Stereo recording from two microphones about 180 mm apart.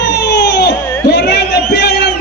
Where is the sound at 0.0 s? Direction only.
70° left (ahead or behind).